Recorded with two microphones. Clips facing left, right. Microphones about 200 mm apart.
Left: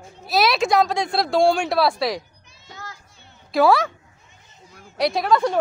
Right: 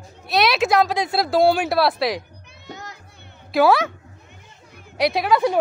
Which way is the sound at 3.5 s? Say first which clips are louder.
Even; centre (ahead or behind).